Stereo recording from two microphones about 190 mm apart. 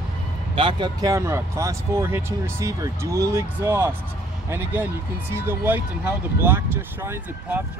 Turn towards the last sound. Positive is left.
turn(degrees=-10)  # may be behind; listen again after turning